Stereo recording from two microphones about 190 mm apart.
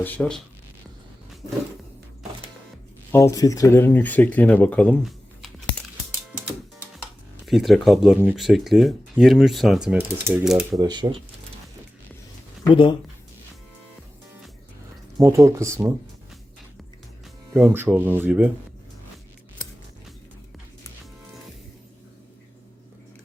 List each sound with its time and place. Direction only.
0.0 s speech: 5° left (ahead or behind)
3.1 s speech: 15° left (ahead or behind)
7.4 s speech: centre (ahead or behind)
10.8 s speech: 20° right (ahead or behind)
12.6 s speech: 25° left (ahead or behind)
15.2 s speech: 15° right (ahead or behind)
17.6 s speech: 10° right (ahead or behind)